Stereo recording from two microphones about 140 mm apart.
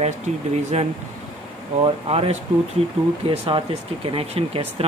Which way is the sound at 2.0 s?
45° right (ahead or behind).